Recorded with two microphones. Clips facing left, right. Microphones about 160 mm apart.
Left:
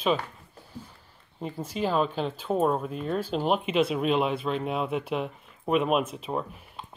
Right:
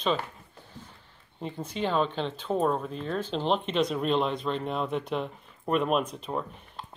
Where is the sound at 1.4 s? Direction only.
5° left (ahead or behind).